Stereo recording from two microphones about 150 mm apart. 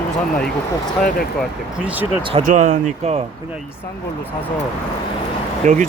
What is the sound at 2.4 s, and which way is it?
Speech, 55° right (ahead or behind).